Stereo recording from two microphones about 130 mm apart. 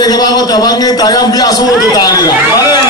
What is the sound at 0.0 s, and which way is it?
A man's voice, 30° left (ahead or behind).